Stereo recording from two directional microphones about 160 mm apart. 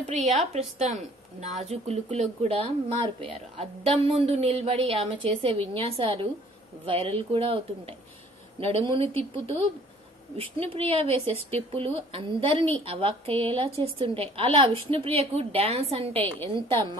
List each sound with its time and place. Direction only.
0.0 s a woman's voice: 45° right (ahead or behind)